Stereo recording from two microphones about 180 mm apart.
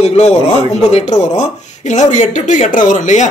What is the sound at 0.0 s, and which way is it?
A man's voice, 35° left (ahead or behind).